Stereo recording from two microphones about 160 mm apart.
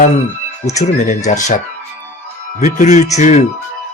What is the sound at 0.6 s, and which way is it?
Speech, 45° left (ahead or behind).